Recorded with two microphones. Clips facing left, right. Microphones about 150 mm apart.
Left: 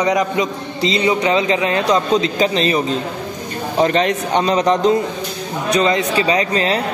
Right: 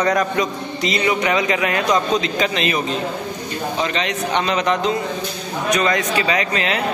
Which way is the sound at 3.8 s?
45° left (ahead or behind).